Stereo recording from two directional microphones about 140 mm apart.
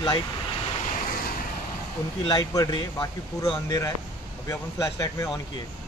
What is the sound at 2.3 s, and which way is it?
Speech, 25° left (ahead or behind).